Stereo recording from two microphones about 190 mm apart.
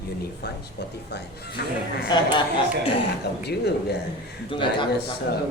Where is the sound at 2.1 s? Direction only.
20° left (ahead or behind).